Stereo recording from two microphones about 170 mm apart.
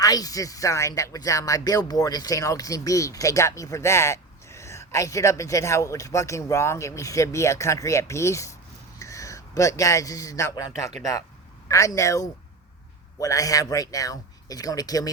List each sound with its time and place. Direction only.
0.0 s a man's voice: 20° left (ahead or behind)
11.9 s speech: 20° left (ahead or behind)